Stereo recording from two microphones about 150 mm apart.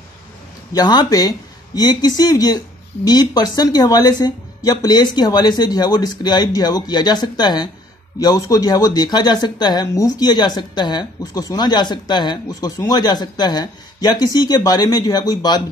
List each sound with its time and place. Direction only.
0.7 s speech: 25° left (ahead or behind)